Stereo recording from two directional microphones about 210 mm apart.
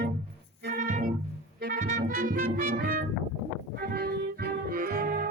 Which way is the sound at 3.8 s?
45° right (ahead or behind).